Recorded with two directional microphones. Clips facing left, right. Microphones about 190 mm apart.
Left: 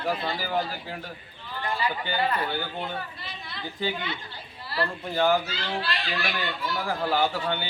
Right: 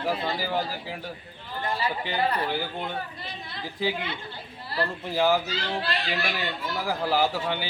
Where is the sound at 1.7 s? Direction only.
35° right (ahead or behind).